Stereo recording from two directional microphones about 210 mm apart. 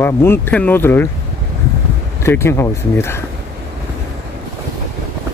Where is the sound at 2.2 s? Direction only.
10° left (ahead or behind).